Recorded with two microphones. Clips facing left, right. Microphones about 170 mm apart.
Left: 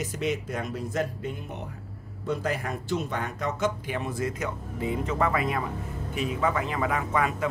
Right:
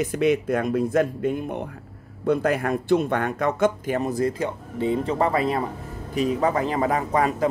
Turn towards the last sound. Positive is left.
turn(degrees=-35)  # may be behind; listen again after turning